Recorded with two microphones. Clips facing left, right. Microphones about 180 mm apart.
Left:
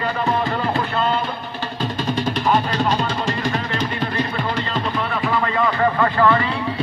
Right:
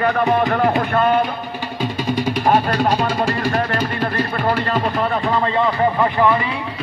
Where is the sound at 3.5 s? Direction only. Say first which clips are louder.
Right 3 dB; 45° right (ahead or behind).